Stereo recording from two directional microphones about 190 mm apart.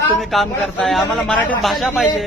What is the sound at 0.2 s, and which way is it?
A man's voice, centre (ahead or behind).